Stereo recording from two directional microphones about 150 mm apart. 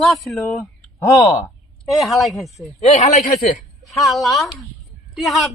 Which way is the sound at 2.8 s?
50° left (ahead or behind).